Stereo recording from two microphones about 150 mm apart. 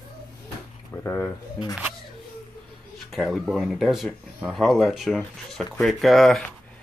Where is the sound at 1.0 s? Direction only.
15° left (ahead or behind).